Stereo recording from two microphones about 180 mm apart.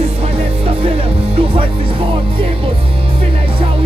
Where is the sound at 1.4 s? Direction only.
30° right (ahead or behind).